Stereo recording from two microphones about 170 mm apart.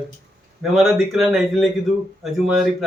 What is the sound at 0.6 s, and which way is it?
A man's voice, centre (ahead or behind).